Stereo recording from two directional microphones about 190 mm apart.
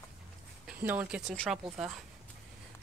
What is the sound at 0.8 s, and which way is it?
Speech, 5° right (ahead or behind).